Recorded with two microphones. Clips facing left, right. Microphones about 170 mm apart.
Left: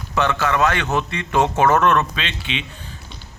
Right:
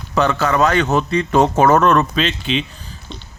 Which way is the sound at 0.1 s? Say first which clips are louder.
Right 3 dB; 35° right (ahead or behind).